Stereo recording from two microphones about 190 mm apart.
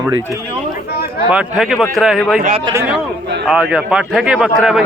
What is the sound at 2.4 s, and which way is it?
Speech, 30° right (ahead or behind).